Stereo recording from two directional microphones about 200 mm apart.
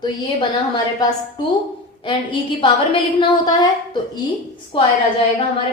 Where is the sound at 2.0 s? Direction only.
25° left (ahead or behind).